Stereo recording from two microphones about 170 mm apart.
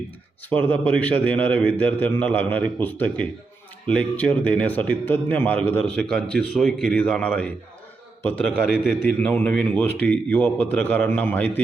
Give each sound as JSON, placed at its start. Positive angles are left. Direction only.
{"t": 0.5, "sound": "speech", "side_deg": 10}